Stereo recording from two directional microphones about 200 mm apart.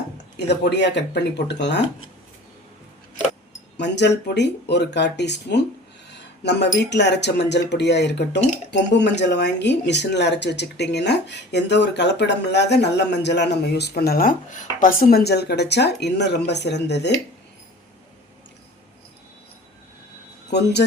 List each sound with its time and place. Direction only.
0.2 s speech: 60° left (ahead or behind)
3.8 s speech: 60° left (ahead or behind)
6.1 s a sound: 60° left (ahead or behind)
6.9 s speech: 60° left (ahead or behind)
20.5 s speech: 55° left (ahead or behind)